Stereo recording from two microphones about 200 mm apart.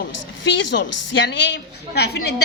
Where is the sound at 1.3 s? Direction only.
60° left (ahead or behind).